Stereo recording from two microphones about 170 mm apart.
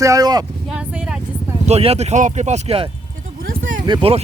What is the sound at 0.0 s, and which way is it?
Speech, 20° right (ahead or behind).